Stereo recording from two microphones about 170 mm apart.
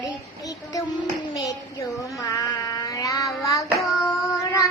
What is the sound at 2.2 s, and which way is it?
Child singing, 20° left (ahead or behind).